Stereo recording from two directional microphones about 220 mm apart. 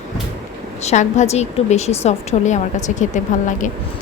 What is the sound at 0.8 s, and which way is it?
Speech, 30° left (ahead or behind).